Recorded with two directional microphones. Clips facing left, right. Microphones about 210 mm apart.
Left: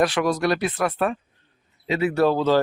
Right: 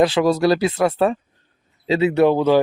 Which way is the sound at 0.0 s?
25° right (ahead or behind).